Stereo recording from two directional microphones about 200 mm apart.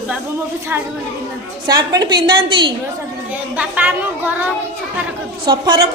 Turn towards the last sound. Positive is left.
turn(degrees=-25)  # may be behind; listen again after turning